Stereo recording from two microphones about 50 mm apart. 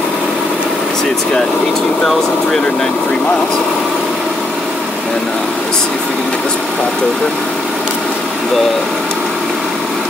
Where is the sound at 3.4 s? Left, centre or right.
Centre.